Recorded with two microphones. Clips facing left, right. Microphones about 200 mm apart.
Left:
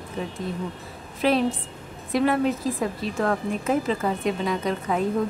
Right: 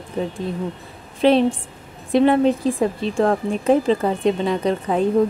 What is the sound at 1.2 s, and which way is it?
A woman's voice, 25° right (ahead or behind).